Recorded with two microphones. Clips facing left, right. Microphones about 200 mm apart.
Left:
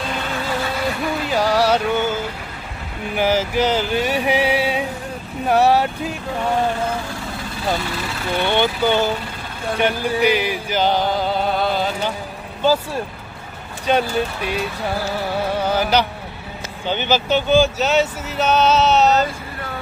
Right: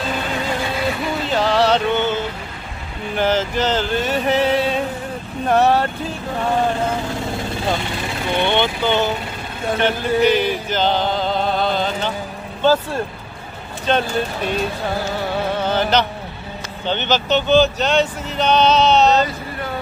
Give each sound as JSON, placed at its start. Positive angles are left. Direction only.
{"t": 1.2, "sound": "music", "side_deg": 10}
{"t": 3.2, "sound": "speech", "side_deg": 10}
{"t": 8.3, "sound": "speech", "side_deg": -20}
{"t": 9.8, "sound": "music", "side_deg": 10}
{"t": 12.6, "sound": "speech", "side_deg": 5}
{"t": 15.5, "sound": "music", "side_deg": 10}
{"t": 16.8, "sound": "speech", "side_deg": 10}